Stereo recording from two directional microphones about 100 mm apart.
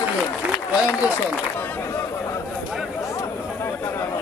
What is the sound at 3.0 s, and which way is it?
Chatter, 30° left (ahead or behind).